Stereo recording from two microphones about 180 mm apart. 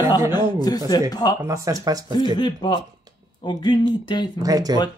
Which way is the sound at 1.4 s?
20° right (ahead or behind).